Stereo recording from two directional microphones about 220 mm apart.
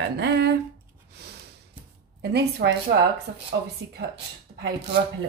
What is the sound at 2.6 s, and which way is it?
Speech, 45° right (ahead or behind).